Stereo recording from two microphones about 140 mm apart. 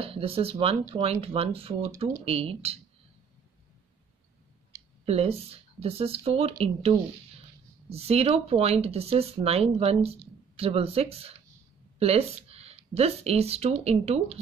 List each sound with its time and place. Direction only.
0.0 s speech: 45° right (ahead or behind)
5.0 s speech: 45° right (ahead or behind)